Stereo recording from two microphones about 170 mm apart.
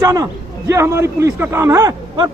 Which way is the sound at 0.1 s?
20° right (ahead or behind).